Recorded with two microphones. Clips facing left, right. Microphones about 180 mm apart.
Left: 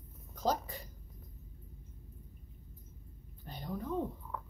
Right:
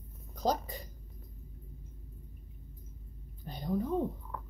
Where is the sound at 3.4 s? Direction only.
15° right (ahead or behind).